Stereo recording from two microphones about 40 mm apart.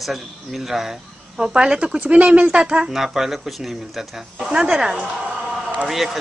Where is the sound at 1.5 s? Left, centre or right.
Right.